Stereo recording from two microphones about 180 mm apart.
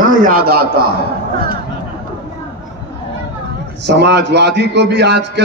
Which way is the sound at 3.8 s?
70° right (ahead or behind).